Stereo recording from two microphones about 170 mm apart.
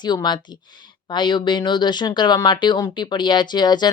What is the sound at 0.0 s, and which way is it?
Speech, 25° left (ahead or behind).